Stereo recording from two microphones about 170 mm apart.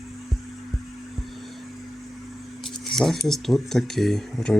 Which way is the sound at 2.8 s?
Centre (ahead or behind).